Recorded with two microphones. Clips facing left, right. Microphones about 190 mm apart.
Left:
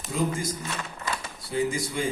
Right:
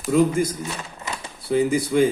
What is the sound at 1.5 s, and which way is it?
Speech, 60° right (ahead or behind).